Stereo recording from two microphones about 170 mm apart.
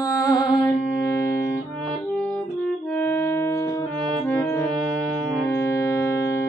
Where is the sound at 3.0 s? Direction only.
15° left (ahead or behind).